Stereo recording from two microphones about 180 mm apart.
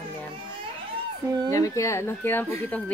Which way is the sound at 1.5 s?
15° left (ahead or behind).